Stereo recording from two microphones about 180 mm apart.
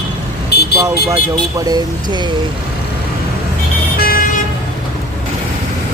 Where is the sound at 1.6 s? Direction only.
20° right (ahead or behind).